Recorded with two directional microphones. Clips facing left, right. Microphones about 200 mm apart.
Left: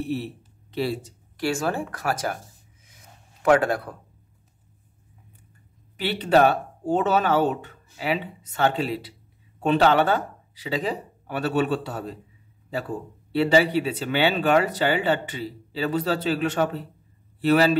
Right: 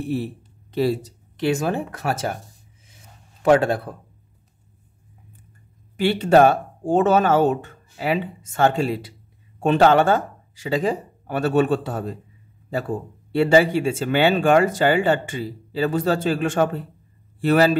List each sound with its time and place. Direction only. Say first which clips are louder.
0.7 s speech: right 5 dB; 45° right (ahead or behind)
1.3 s speech: right 4 dB; 20° right (ahead or behind)
3.4 s speech: right 3 dB; 25° right (ahead or behind)
5.9 s a man's voice: right 4 dB; 45° right (ahead or behind)